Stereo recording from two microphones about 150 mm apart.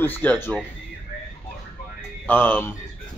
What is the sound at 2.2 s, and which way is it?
Speech, 15° left (ahead or behind).